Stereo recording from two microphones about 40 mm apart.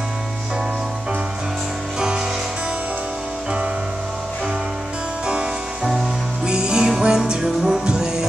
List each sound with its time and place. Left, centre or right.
2.0 s music: centre
6.4 s music: centre